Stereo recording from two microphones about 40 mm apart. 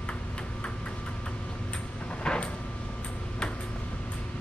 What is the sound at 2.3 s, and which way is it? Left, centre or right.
Sliding door, centre.